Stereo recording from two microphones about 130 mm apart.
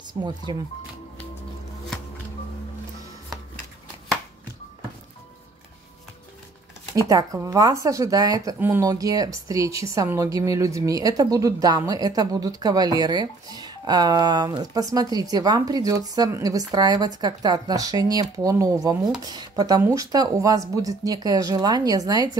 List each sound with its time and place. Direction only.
0.0 s speech: 35° right (ahead or behind)
7.1 s speech: 25° right (ahead or behind)
8.5 s speech: 15° right (ahead or behind)
8.8 s speech: 30° right (ahead or behind)